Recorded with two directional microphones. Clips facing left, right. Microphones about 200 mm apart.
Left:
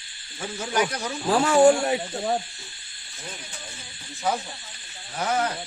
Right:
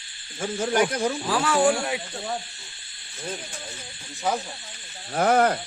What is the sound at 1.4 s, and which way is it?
Speech, 25° left (ahead or behind).